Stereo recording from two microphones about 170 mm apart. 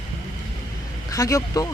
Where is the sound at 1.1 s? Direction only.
20° left (ahead or behind).